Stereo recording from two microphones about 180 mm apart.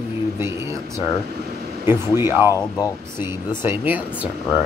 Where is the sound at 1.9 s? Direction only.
15° right (ahead or behind).